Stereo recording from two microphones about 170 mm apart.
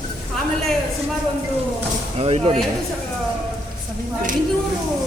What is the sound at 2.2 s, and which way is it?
Speech, 35° right (ahead or behind).